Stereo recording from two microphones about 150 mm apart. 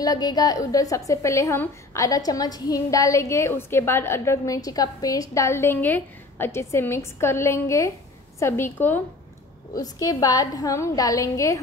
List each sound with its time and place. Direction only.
0.0 s a woman's voice: 25° left (ahead or behind)
9.8 s a woman's voice: 25° left (ahead or behind)